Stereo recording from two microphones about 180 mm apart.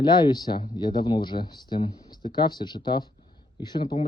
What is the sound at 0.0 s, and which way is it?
Speech, 25° left (ahead or behind).